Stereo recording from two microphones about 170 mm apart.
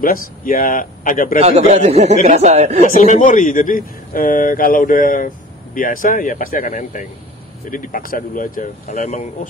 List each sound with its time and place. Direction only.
0.0 s a man's voice: 55° left (ahead or behind)
1.4 s speech: 40° right (ahead or behind)
2.9 s a man's voice: 45° left (ahead or behind)